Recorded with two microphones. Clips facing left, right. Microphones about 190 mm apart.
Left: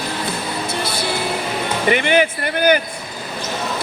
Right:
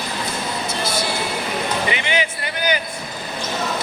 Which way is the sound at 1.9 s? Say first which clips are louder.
Left 7 dB; 50° left (ahead or behind).